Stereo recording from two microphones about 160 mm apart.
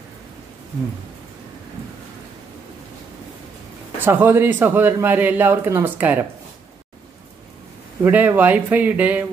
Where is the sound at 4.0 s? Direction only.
10° right (ahead or behind).